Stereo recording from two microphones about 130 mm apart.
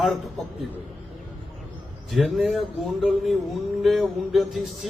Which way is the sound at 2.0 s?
Centre (ahead or behind).